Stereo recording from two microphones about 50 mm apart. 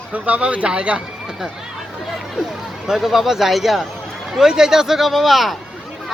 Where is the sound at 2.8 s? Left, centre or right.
Centre.